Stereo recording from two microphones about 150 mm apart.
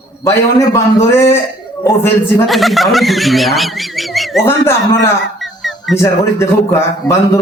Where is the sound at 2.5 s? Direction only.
Centre (ahead or behind).